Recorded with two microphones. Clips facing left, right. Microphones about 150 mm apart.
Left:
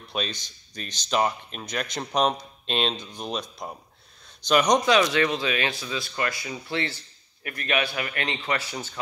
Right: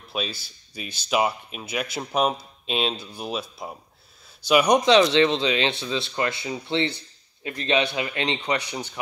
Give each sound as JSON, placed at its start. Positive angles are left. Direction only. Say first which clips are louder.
{"t": 0.1, "sound": "speech", "louder": "right 1 dB", "side_deg": -5}
{"t": 4.8, "sound": "speech", "louder": "right 4 dB", "side_deg": -25}